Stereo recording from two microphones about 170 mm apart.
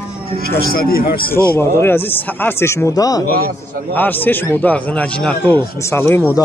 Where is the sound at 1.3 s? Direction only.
15° left (ahead or behind).